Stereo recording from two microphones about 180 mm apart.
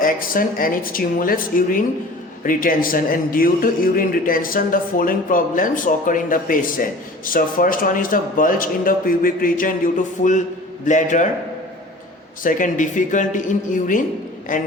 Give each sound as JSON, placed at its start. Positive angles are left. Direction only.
{"t": 0.0, "sound": "a man's voice", "side_deg": 50}
{"t": 12.4, "sound": "a man's voice", "side_deg": 50}